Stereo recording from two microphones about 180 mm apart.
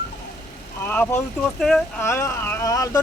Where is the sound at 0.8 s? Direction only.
10° left (ahead or behind).